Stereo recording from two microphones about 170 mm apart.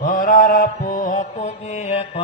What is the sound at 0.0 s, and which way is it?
Mantra, 50° left (ahead or behind).